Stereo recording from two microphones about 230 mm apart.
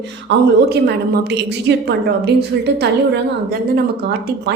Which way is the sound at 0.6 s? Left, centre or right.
Right.